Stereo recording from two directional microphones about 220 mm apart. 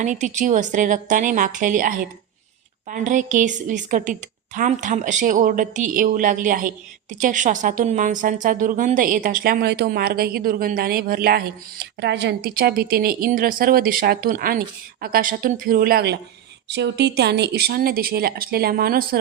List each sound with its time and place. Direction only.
0.0 s a woman's voice: 35° right (ahead or behind)